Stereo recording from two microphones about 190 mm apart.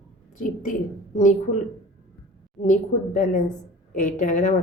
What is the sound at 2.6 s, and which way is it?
Speech, 40° left (ahead or behind).